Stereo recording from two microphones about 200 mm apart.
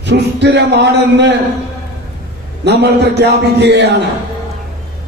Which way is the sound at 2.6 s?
60° right (ahead or behind).